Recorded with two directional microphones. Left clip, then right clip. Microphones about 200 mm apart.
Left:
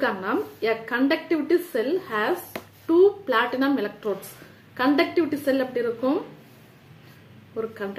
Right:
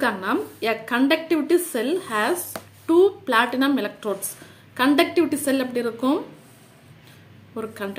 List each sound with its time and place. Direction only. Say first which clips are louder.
0.0 s a woman's voice: right 2 dB; 35° right (ahead or behind)
7.5 s a woman's voice: even; 35° right (ahead or behind)